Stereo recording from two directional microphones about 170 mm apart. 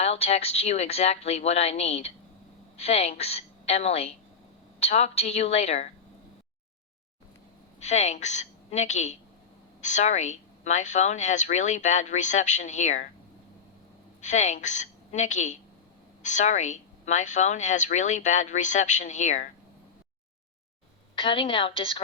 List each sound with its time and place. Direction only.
0.0 s a woman's voice: 40° left (ahead or behind)
7.9 s a woman's voice: 40° left (ahead or behind)
14.2 s a woman's voice: 45° left (ahead or behind)
21.2 s speech: 30° left (ahead or behind)